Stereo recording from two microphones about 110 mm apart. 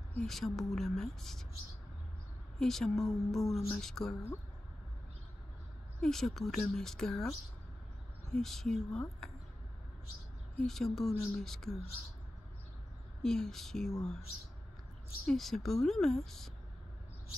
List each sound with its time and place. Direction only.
0.2 s speech: centre (ahead or behind)
2.6 s speech: 5° left (ahead or behind)
5.9 s speech: 5° left (ahead or behind)
9.2 s a sound: 5° left (ahead or behind)
10.6 s speech: 5° left (ahead or behind)
13.2 s speech: 5° left (ahead or behind)
15.2 s speech: 5° left (ahead or behind)